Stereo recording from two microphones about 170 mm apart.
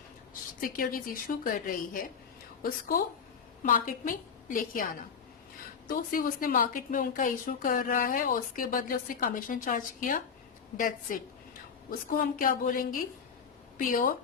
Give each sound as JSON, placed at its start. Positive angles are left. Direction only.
{"t": 0.6, "sound": "a woman's voice", "side_deg": 55}
{"t": 5.9, "sound": "a woman's voice", "side_deg": 55}